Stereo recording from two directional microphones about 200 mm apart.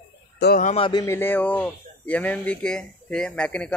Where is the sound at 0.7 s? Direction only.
25° left (ahead or behind); by 3.7 s 5° left (ahead or behind).